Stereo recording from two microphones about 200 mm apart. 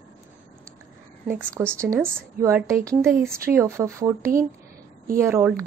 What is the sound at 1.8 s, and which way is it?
Speech, 10° right (ahead or behind).